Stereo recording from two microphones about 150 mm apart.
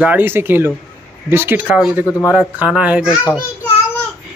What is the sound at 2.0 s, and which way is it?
Speech, 20° left (ahead or behind).